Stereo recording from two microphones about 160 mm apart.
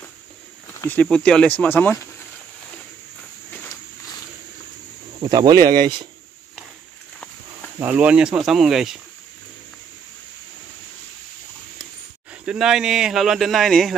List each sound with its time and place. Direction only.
0.7 s snake: 10° left (ahead or behind)
1.1 s speech: 5° left (ahead or behind)
5.2 s speech: 25° right (ahead or behind)
7.8 s speech: 10° right (ahead or behind)
12.3 s speech: 5° right (ahead or behind)